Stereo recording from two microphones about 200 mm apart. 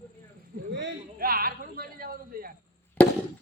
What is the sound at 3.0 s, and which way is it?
Chop, 5° left (ahead or behind).